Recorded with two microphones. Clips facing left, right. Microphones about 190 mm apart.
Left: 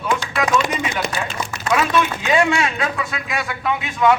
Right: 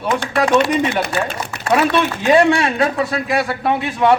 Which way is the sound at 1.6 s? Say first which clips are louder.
Right 3 dB; 30° right (ahead or behind).